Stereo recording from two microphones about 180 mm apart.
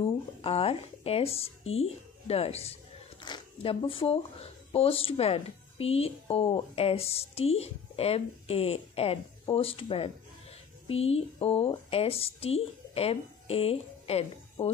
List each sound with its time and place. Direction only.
0.0 s speech: 35° left (ahead or behind)